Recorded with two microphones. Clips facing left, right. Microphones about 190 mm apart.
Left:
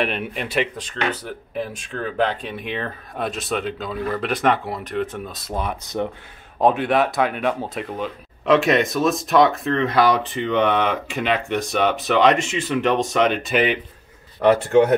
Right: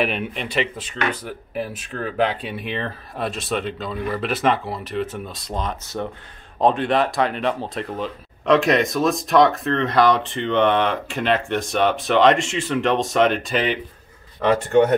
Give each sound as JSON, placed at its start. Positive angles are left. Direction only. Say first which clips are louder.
{"t": 0.0, "sound": "speech", "louder": "right 1 dB", "side_deg": 0}